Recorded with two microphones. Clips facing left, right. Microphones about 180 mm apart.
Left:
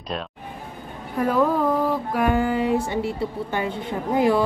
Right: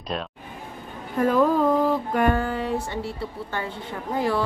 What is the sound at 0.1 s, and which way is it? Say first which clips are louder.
A woman's voice: left 1 dB; centre (ahead or behind).